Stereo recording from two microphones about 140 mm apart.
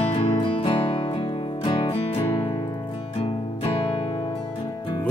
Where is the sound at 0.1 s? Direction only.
40° left (ahead or behind).